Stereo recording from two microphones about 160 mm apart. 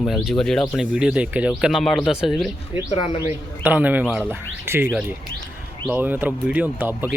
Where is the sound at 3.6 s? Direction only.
10° right (ahead or behind).